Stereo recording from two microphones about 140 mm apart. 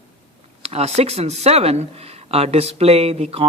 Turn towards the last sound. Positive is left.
turn(degrees=-45)  # may be behind; listen again after turning